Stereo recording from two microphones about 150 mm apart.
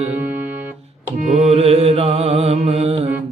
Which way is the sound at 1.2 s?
55° right (ahead or behind).